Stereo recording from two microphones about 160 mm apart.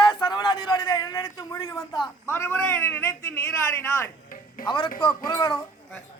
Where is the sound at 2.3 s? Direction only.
15° left (ahead or behind).